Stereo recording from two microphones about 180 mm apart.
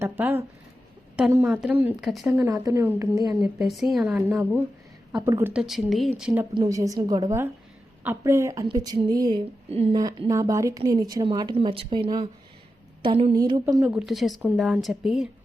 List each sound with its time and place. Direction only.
0.0 s speech: 10° right (ahead or behind)
2.3 s speech: 15° right (ahead or behind)
3.4 s speech: centre (ahead or behind)
5.6 s speech: centre (ahead or behind)
6.5 s speech: 20° right (ahead or behind)
9.6 s speech: 35° right (ahead or behind)
10.0 s a woman's voice: 20° right (ahead or behind)
13.8 s speech: 5° right (ahead or behind)